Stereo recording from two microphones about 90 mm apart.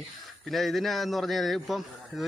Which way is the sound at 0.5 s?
Centre (ahead or behind).